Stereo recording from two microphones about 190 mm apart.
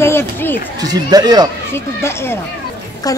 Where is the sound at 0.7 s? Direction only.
20° right (ahead or behind).